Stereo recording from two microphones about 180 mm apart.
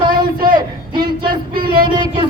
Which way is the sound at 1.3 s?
55° right (ahead or behind).